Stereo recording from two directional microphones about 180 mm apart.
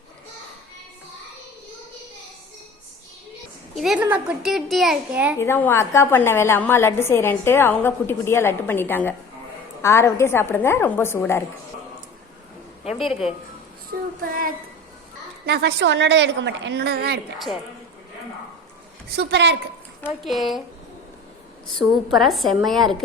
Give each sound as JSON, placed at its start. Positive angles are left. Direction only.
{"t": 3.8, "sound": "a woman's voice", "side_deg": 0}
{"t": 5.4, "sound": "a woman's voice", "side_deg": 10}
{"t": 13.1, "sound": "speech", "side_deg": 35}
{"t": 14.2, "sound": "child singing", "side_deg": -50}
{"t": 15.4, "sound": "a woman's voice", "side_deg": -65}
{"t": 17.3, "sound": "a woman's voice", "side_deg": 0}
{"t": 19.1, "sound": "a woman's voice", "side_deg": -70}
{"t": 20.2, "sound": "a woman's voice", "side_deg": 0}
{"t": 22.1, "sound": "a woman's voice", "side_deg": 0}